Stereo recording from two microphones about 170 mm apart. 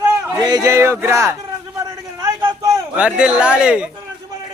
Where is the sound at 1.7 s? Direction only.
20° right (ahead or behind).